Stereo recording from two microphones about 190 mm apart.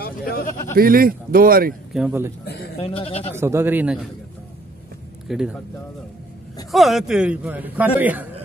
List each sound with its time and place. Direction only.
0.7 s speech: 50° right (ahead or behind)
2.0 s a man's voice: 10° right (ahead or behind)
2.4 s a sound: 60° left (ahead or behind)
2.8 s speech: 30° left (ahead or behind)
3.3 s a man's voice: 15° right (ahead or behind)
5.3 s speech: 5° right (ahead or behind)
6.7 s a man's voice: centre (ahead or behind)